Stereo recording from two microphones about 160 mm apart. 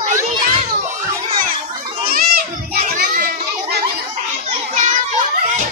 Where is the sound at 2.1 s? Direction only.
60° right (ahead or behind).